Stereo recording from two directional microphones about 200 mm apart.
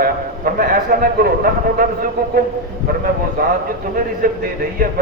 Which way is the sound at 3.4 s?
45° right (ahead or behind).